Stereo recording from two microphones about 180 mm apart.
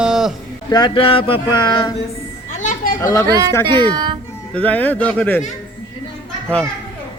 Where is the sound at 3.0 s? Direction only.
20° left (ahead or behind).